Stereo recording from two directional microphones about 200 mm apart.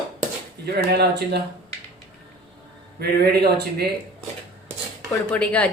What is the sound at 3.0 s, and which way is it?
Speech, 55° right (ahead or behind).